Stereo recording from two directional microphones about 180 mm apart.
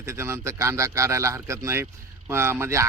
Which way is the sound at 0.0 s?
15° right (ahead or behind).